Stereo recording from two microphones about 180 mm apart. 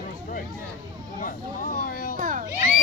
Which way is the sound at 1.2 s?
50° left (ahead or behind).